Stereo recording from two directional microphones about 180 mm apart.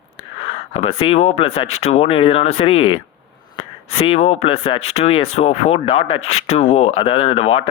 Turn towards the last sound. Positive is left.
turn(degrees=30)  # may be behind; listen again after turning